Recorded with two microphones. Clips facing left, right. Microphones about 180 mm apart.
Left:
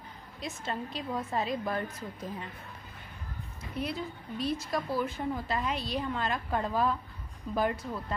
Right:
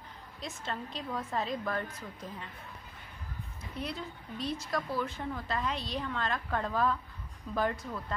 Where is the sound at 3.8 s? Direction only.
5° left (ahead or behind).